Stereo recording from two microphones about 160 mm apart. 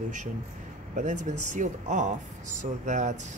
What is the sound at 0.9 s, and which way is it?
Speech, 50° right (ahead or behind).